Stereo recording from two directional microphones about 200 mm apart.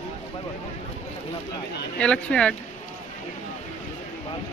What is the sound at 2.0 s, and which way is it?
Speech, 5° left (ahead or behind).